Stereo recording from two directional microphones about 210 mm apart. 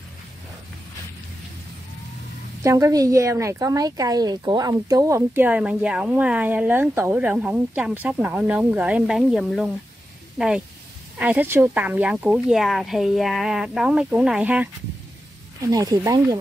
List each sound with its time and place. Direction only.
2.6 s speech: 15° right (ahead or behind)